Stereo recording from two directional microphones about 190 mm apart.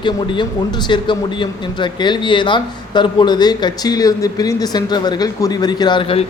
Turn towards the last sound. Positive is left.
turn(degrees=30)  # may be behind; listen again after turning